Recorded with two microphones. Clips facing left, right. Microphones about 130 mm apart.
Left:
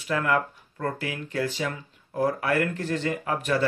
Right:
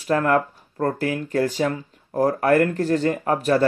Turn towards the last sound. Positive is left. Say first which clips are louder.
# right 6 dB
turn(degrees=-40)  # may be behind; listen again after turning